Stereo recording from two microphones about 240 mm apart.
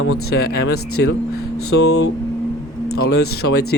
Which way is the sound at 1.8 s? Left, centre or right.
Left.